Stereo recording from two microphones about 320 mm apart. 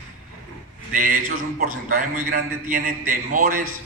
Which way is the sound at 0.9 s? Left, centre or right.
Right.